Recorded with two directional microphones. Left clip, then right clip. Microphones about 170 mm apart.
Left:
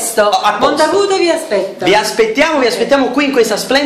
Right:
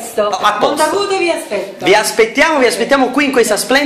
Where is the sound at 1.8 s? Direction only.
35° right (ahead or behind).